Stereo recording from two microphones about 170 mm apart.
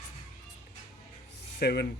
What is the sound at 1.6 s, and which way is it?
Speech, 75° left (ahead or behind).